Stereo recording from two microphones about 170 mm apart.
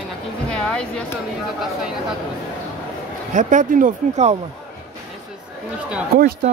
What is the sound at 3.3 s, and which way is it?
Speech, 50° right (ahead or behind).